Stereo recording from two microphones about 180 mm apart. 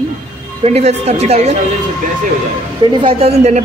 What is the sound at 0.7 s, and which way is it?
Speech, 35° right (ahead or behind).